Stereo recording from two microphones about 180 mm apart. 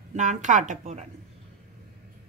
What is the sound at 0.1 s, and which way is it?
Speech, 45° right (ahead or behind).